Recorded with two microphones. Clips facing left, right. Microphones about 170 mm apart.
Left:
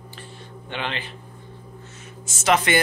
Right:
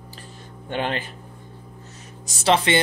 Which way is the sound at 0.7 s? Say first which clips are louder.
Right 5 dB; 45° right (ahead or behind).